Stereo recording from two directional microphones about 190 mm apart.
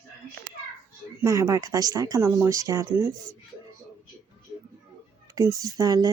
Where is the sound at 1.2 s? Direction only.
15° right (ahead or behind).